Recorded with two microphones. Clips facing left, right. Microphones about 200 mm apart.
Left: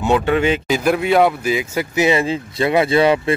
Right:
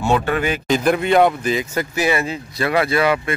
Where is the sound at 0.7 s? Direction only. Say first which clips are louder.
Even; 5° left (ahead or behind).